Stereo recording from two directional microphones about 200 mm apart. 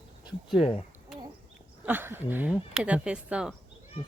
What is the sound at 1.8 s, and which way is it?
Speech, 10° right (ahead or behind).